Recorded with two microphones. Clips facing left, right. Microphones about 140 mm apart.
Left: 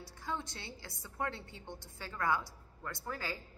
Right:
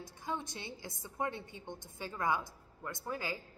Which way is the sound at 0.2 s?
20° right (ahead or behind).